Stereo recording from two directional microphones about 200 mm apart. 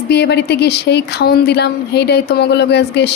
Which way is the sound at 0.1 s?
55° left (ahead or behind).